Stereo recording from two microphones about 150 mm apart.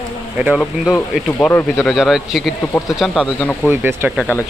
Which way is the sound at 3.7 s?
15° right (ahead or behind).